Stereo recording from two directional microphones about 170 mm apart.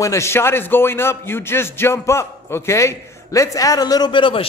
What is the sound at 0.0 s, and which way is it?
A man's voice, 15° left (ahead or behind).